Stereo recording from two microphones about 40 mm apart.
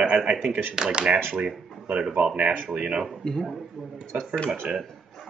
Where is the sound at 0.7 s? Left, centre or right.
Right.